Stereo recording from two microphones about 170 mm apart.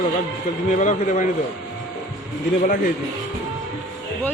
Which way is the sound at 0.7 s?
45° left (ahead or behind).